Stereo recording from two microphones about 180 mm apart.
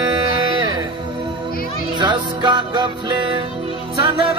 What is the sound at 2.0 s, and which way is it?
Music, 25° right (ahead or behind).